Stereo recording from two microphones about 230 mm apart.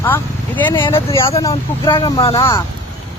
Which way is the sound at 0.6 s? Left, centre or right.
Centre.